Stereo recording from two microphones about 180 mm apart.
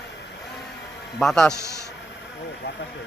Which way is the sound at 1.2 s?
5° left (ahead or behind).